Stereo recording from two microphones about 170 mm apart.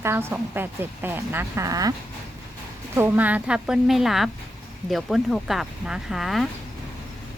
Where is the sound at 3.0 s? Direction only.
10° right (ahead or behind).